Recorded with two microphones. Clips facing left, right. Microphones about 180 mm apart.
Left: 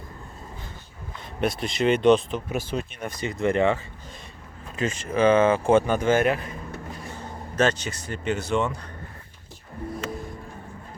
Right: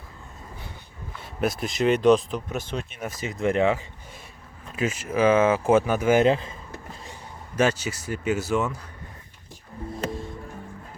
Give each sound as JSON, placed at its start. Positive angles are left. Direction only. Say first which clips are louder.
{"t": 1.4, "sound": "speech", "louder": "even", "side_deg": 0}
{"t": 3.0, "sound": "speech", "louder": "even", "side_deg": -5}
{"t": 4.8, "sound": "speech", "louder": "even", "side_deg": -5}
{"t": 6.1, "sound": "speech", "louder": "right 3 dB", "side_deg": -25}
{"t": 7.0, "sound": "speech", "louder": "left 5 dB", "side_deg": -15}